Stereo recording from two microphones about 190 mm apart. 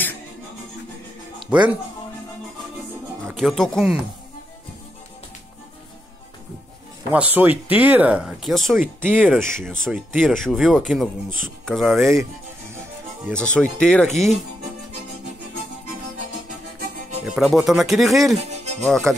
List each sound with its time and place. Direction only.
1.5 s speech: 5° right (ahead or behind)
3.3 s speech: centre (ahead or behind)
7.1 s speech: 10° right (ahead or behind)
9.6 s speech: 5° left (ahead or behind)
13.4 s speech: 5° left (ahead or behind)
17.4 s speech: centre (ahead or behind)
18.5 s music: 35° right (ahead or behind)
18.9 s speech: 5° left (ahead or behind)